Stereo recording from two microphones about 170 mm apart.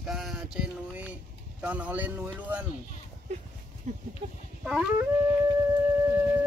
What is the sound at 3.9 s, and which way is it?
Speech, 45° right (ahead or behind).